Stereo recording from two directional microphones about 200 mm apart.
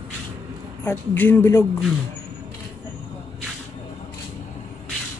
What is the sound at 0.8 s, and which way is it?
Speech, 10° left (ahead or behind).